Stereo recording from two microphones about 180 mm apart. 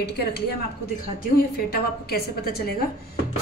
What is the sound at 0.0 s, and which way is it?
Speech, 65° left (ahead or behind).